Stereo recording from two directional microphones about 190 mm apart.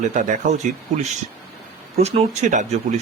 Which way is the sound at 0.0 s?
40° right (ahead or behind).